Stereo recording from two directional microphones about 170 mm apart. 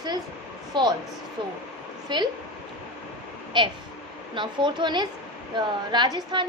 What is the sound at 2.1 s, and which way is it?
Speech, 25° right (ahead or behind).